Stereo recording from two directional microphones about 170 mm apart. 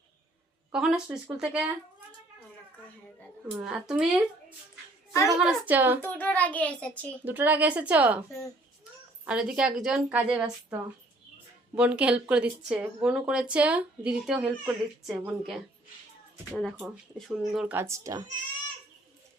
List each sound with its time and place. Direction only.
0.7 s a woman's voice: 5° right (ahead or behind)
3.6 s a woman's voice: 5° right (ahead or behind)
6.0 s a child's voice: 10° left (ahead or behind)
7.3 s speech: 10° right (ahead or behind)
9.2 s a woman's voice: 5° right (ahead or behind)
17.7 s speech: 15° right (ahead or behind)